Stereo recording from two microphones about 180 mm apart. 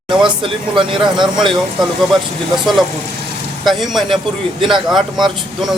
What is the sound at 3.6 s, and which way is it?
A man's voice, centre (ahead or behind).